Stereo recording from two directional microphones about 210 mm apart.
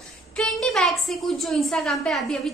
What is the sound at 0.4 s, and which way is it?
A woman's voice, centre (ahead or behind).